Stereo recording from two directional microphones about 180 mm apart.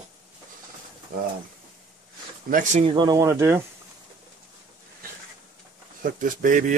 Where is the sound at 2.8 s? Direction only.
25° right (ahead or behind).